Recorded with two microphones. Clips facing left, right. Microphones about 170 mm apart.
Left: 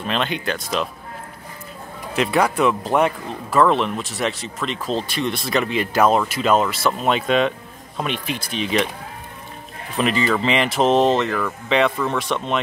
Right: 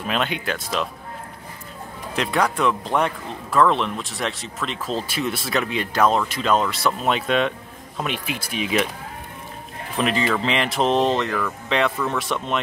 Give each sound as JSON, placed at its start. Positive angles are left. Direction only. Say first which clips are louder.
{"t": 0.0, "sound": "speech", "louder": "left 1 dB", "side_deg": -5}
{"t": 2.1, "sound": "speech", "louder": "left 3 dB", "side_deg": 5}
{"t": 9.9, "sound": "speech", "louder": "left 2 dB", "side_deg": 0}